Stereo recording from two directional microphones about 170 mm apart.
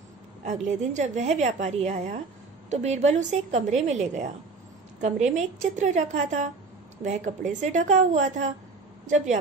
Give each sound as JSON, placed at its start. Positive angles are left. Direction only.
{"t": 0.4, "sound": "a woman's voice", "side_deg": -45}